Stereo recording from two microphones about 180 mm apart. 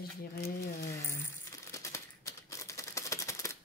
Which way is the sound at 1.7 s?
15° left (ahead or behind).